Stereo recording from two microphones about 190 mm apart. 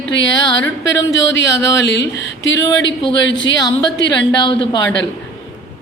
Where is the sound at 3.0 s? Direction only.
25° left (ahead or behind).